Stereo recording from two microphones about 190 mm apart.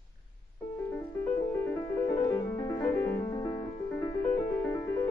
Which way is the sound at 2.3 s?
10° left (ahead or behind).